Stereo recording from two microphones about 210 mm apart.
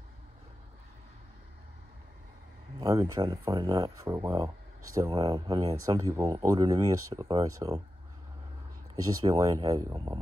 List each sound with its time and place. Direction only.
2.8 s speech: 20° right (ahead or behind)
9.0 s speech: 15° right (ahead or behind)